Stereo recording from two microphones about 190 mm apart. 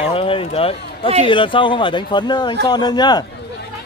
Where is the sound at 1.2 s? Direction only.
25° left (ahead or behind).